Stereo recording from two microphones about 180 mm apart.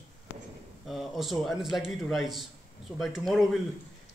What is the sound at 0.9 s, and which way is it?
Speech, centre (ahead or behind).